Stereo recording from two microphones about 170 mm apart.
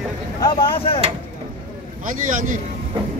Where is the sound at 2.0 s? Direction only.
50° right (ahead or behind).